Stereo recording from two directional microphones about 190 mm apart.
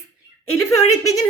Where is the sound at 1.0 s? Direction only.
15° left (ahead or behind).